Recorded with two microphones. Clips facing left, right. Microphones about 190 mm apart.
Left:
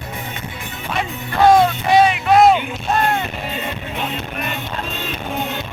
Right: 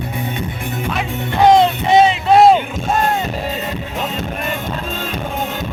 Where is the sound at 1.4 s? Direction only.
20° right (ahead or behind).